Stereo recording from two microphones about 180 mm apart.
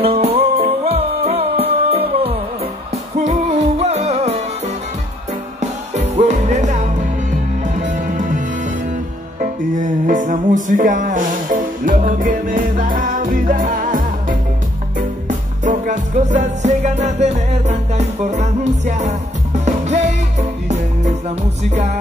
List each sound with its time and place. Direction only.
0.0 s music: 35° right (ahead or behind)
5.6 s music: 40° right (ahead or behind)
9.4 s music: 45° right (ahead or behind)